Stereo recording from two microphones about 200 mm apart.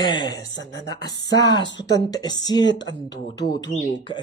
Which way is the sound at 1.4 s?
20° left (ahead or behind).